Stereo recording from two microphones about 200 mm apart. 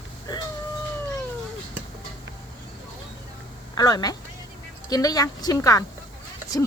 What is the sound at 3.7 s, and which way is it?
A woman's voice, 20° left (ahead or behind).